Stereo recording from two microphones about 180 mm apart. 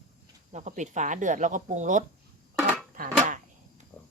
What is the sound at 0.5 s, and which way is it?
Speech, 40° right (ahead or behind).